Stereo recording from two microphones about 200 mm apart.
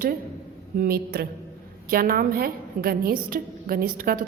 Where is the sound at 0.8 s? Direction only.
50° right (ahead or behind).